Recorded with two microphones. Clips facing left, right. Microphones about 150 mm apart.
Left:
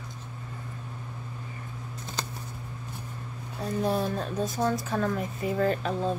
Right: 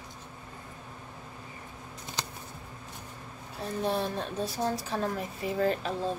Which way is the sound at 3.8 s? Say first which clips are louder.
Left 2 dB; 45° left (ahead or behind).